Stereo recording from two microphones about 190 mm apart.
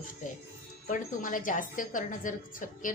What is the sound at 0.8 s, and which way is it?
A woman's voice, 45° left (ahead or behind).